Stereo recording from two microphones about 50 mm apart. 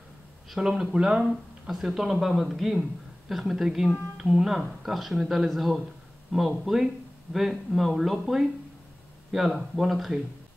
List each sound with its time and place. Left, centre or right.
0.6 s speech: centre
1.3 s speech: centre